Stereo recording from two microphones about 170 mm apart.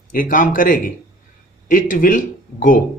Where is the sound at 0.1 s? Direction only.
55° left (ahead or behind).